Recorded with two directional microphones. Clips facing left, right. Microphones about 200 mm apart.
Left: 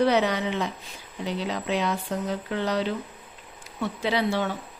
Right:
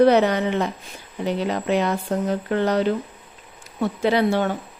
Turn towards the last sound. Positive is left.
turn(degrees=-50)  # may be behind; listen again after turning